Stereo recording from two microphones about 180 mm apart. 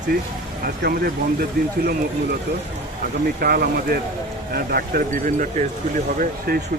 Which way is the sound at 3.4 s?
55° right (ahead or behind).